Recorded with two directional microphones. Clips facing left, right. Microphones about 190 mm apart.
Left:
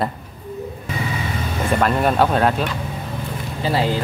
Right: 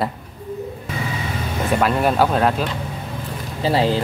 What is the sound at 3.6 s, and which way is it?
Speech, 30° right (ahead or behind).